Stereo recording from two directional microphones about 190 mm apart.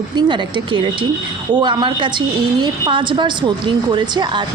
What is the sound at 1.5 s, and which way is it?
A woman's voice, 25° right (ahead or behind).